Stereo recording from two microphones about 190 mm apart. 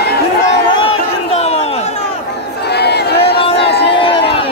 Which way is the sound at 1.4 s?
30° left (ahead or behind).